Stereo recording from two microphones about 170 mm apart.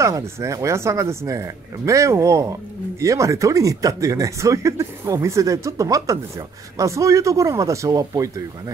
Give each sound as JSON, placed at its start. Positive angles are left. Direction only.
{"t": 0.0, "sound": "speech", "side_deg": -15}